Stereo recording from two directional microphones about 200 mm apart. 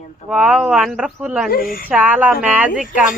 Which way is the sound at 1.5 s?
45° left (ahead or behind).